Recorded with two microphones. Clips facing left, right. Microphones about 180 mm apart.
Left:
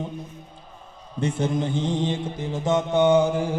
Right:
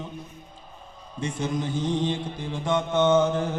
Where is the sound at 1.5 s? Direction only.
25° left (ahead or behind).